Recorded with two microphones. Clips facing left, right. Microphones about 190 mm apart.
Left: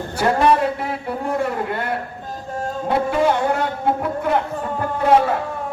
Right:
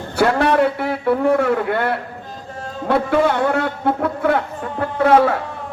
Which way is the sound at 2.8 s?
65° right (ahead or behind).